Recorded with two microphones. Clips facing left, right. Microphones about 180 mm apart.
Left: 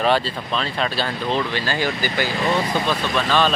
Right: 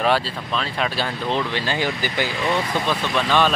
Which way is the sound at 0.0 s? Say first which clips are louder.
Left 1 dB; 10° right (ahead or behind).